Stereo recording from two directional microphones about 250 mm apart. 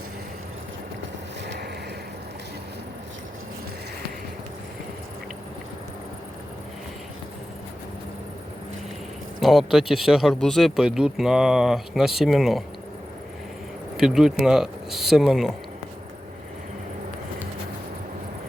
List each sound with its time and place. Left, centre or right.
1.5 s vehicle: right
9.4 s speech: centre
13.9 s speech: centre